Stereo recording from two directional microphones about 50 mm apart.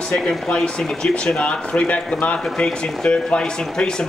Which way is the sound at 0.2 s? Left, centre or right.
Centre.